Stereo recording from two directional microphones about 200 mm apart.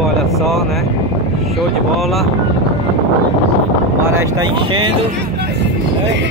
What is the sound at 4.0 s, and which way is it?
Speech, 10° right (ahead or behind).